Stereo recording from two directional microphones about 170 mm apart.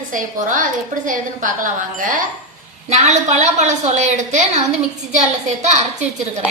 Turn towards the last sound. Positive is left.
turn(degrees=-40)  # may be behind; listen again after turning